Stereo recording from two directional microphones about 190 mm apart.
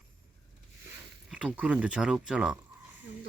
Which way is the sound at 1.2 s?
5° right (ahead or behind).